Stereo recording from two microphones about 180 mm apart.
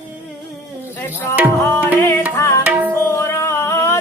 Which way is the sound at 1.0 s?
15° left (ahead or behind).